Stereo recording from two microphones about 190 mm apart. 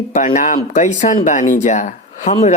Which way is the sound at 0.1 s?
40° left (ahead or behind).